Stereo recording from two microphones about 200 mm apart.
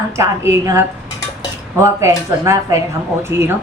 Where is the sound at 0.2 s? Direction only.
15° right (ahead or behind).